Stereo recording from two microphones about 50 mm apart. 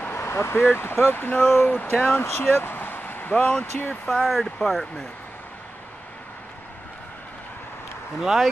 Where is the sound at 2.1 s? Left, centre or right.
Left.